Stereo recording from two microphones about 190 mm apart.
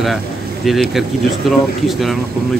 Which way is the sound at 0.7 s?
Centre (ahead or behind).